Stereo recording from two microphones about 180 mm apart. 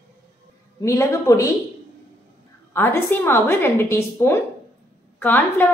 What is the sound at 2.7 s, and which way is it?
A woman's voice, 15° left (ahead or behind).